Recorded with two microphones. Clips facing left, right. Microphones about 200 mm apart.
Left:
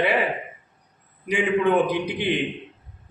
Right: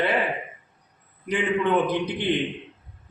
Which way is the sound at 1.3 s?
10° left (ahead or behind).